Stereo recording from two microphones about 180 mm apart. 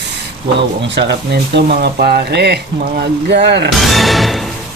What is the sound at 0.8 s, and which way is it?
Speech, 75° right (ahead or behind).